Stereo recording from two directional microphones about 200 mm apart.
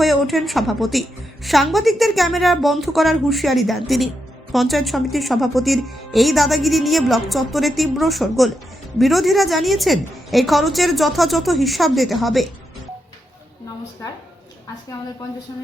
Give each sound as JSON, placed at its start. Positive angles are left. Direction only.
{"t": 0.0, "sound": "speech", "side_deg": 0}